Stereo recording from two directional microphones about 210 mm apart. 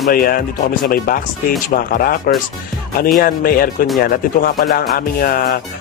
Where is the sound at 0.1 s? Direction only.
45° left (ahead or behind).